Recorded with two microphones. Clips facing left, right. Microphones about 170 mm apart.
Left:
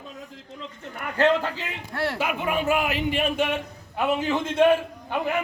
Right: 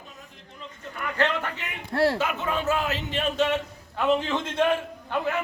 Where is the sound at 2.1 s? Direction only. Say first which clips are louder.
Left 1 dB; 10° left (ahead or behind).